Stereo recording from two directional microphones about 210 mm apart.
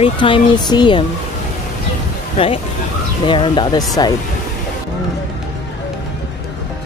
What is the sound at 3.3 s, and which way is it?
Speech, 20° left (ahead or behind).